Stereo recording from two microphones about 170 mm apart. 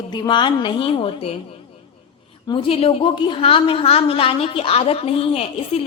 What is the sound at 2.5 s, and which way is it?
A woman's voice, 35° left (ahead or behind).